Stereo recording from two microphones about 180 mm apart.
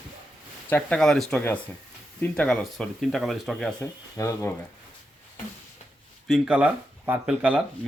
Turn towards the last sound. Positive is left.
turn(degrees=-5)  # may be behind; listen again after turning